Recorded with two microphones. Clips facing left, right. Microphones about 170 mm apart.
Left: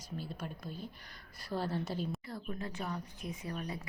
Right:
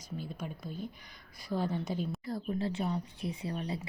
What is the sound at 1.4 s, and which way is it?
Speech, 15° right (ahead or behind).